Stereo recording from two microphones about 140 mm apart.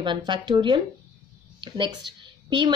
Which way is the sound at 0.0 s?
35° right (ahead or behind).